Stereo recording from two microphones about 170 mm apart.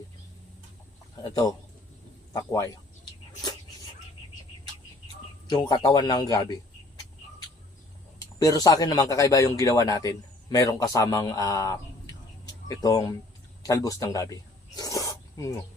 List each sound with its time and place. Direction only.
1.2 s speech: 20° left (ahead or behind)
5.5 s speech: 25° left (ahead or behind)
8.2 s speech: 20° left (ahead or behind)
14.8 s snake: 20° left (ahead or behind)